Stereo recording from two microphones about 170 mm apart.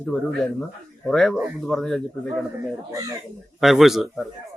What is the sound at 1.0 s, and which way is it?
A man's voice, 5° left (ahead or behind).